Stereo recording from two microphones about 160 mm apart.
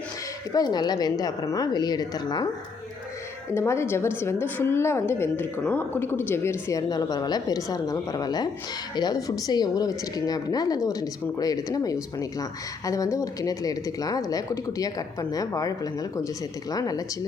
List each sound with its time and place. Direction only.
0.5 s speech: 25° left (ahead or behind)
3.5 s a woman's voice: 15° left (ahead or behind)